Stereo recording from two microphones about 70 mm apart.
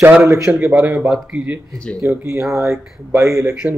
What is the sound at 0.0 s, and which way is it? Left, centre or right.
A man's voice, right.